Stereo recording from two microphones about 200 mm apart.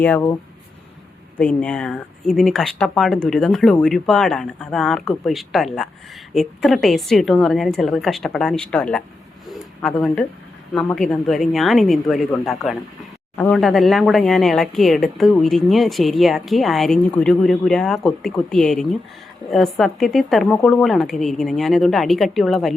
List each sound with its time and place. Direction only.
0.0 s speech: 10° left (ahead or behind)
1.4 s speech: 5° left (ahead or behind)
9.5 s a sound: 5° left (ahead or behind)
10.9 s speech: 5° left (ahead or behind)